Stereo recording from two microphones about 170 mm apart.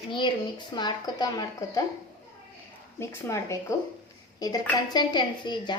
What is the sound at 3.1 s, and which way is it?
Speech, 15° left (ahead or behind).